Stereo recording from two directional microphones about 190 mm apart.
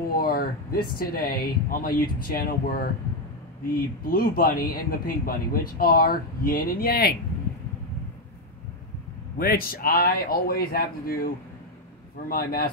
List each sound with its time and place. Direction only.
0.1 s speech: 50° left (ahead or behind)
4.0 s speech: 50° left (ahead or behind)
9.4 s speech: 50° left (ahead or behind)
12.3 s speech: 55° left (ahead or behind)